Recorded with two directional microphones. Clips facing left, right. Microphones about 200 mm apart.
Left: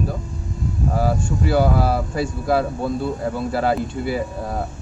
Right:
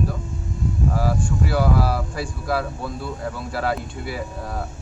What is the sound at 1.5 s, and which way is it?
Speech, 25° left (ahead or behind).